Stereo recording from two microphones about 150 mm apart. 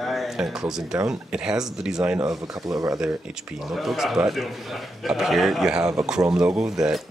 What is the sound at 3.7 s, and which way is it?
Speech, centre (ahead or behind).